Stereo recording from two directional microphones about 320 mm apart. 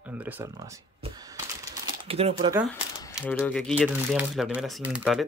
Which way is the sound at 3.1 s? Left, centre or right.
Centre.